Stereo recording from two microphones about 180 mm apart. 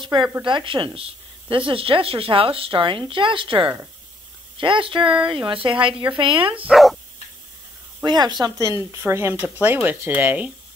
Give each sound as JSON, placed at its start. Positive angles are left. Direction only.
{"t": 0.0, "sound": "a woman's voice", "side_deg": -25}
{"t": 6.7, "sound": "speech", "side_deg": 0}
{"t": 8.0, "sound": "speech", "side_deg": -25}